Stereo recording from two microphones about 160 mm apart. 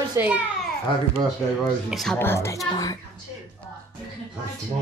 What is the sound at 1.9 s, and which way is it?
Speech, centre (ahead or behind).